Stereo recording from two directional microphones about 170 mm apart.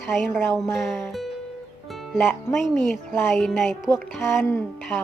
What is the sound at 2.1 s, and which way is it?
Speech, 10° left (ahead or behind).